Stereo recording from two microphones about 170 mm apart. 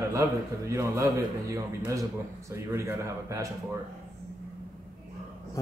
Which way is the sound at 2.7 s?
15° right (ahead or behind).